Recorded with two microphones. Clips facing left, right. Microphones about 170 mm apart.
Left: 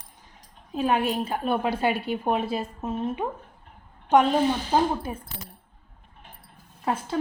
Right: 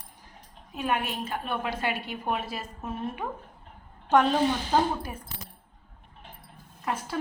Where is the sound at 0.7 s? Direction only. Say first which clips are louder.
Left 6 dB; 35° left (ahead or behind); by 4.9 s 15° left (ahead or behind).